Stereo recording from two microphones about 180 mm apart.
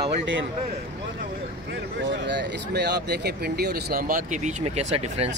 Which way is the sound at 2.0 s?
75° right (ahead or behind).